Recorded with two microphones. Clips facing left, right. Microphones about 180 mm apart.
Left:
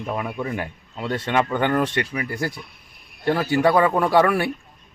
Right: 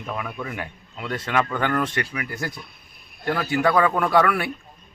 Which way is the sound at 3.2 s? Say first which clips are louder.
Left 3 dB; 30° left (ahead or behind).